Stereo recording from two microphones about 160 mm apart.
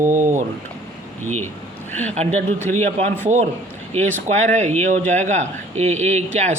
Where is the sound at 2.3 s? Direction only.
15° left (ahead or behind).